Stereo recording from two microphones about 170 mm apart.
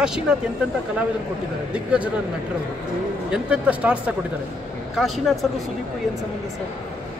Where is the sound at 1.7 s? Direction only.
5° right (ahead or behind).